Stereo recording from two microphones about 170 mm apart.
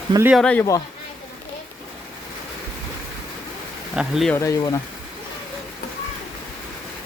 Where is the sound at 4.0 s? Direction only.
Centre (ahead or behind).